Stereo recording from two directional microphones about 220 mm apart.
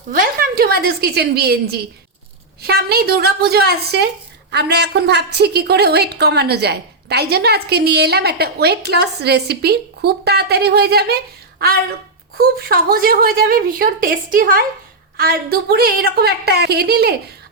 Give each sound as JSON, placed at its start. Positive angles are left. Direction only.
{"t": 0.1, "sound": "a woman's voice", "side_deg": -40}
{"t": 12.4, "sound": "a woman's voice", "side_deg": -45}